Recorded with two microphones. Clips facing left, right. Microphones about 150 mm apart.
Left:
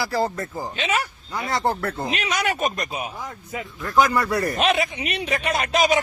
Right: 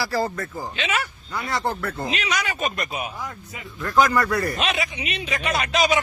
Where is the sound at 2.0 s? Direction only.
45° left (ahead or behind).